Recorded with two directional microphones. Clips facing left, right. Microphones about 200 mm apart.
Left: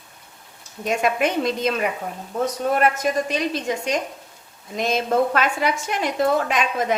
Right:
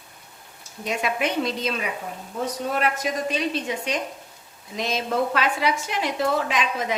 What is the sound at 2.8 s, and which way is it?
Speech, 45° left (ahead or behind).